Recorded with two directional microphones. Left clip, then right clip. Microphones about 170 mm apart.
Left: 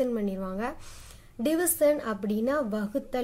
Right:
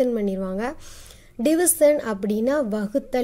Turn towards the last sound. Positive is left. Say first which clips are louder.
# right 6 dB
turn(degrees=-35)  # may be behind; listen again after turning